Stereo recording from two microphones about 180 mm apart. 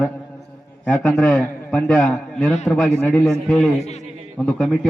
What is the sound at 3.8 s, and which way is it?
Speech, 40° left (ahead or behind).